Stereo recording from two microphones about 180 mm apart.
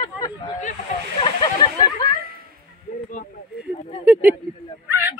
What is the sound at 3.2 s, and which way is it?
Speech, 55° left (ahead or behind).